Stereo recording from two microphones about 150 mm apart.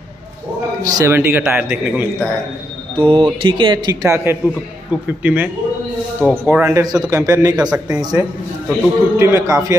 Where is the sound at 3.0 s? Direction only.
35° right (ahead or behind).